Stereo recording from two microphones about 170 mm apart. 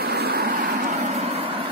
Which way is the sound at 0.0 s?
70° right (ahead or behind).